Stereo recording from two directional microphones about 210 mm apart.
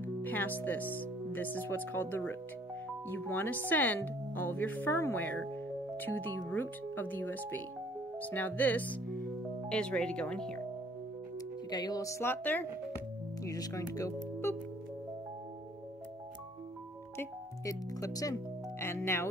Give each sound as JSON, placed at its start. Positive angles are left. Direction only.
{"t": 0.0, "sound": "music", "side_deg": 10}
{"t": 0.9, "sound": "speech", "side_deg": 10}
{"t": 11.3, "sound": "speech", "side_deg": 20}
{"t": 17.2, "sound": "speech", "side_deg": 15}